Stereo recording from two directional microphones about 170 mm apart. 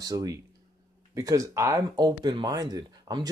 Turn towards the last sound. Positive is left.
turn(degrees=-20)  # may be behind; listen again after turning